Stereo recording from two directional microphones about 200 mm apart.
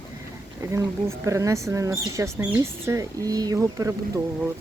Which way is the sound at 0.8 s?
15° right (ahead or behind).